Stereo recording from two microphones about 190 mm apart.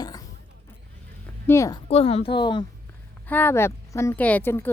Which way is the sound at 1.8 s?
30° left (ahead or behind).